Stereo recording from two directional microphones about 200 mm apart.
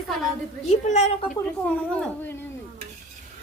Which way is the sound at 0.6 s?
35° left (ahead or behind).